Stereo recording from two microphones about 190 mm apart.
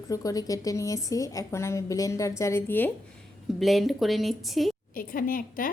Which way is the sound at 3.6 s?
Centre (ahead or behind).